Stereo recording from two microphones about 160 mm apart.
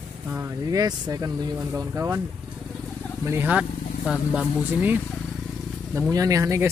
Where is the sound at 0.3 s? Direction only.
15° right (ahead or behind).